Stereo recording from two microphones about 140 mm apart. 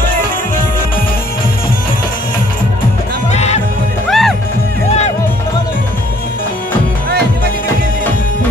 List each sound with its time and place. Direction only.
3.3 s music: 50° left (ahead or behind)
4.1 s music: centre (ahead or behind)